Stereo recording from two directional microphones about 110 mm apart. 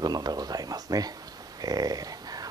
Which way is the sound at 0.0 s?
35° right (ahead or behind).